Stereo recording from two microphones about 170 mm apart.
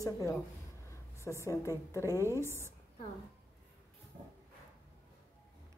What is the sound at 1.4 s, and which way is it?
Speech, 15° left (ahead or behind).